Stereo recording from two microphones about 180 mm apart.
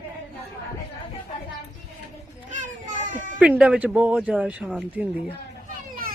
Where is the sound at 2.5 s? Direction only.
45° right (ahead or behind).